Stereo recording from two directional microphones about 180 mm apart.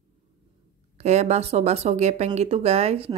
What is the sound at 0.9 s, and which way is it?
Speech, 40° right (ahead or behind).